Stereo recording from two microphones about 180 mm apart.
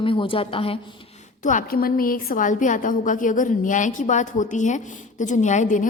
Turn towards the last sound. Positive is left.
turn(degrees=45)  # may be behind; listen again after turning